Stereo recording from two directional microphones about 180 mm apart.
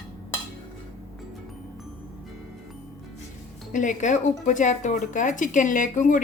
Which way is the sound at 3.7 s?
45° left (ahead or behind).